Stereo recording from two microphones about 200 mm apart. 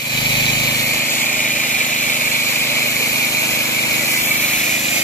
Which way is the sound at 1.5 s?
40° left (ahead or behind).